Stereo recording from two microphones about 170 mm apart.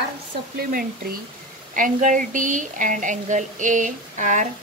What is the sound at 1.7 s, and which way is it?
A woman's voice, 50° right (ahead or behind).